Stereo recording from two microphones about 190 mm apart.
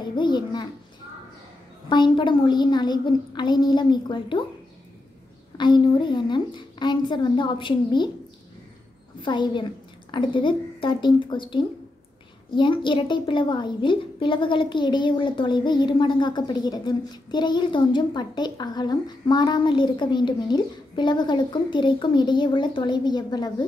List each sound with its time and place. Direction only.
0.0 s a sound: 25° left (ahead or behind)
1.9 s a woman's voice: 25° left (ahead or behind)
5.6 s a woman's voice: 25° left (ahead or behind)
9.2 s a woman's voice: 25° left (ahead or behind)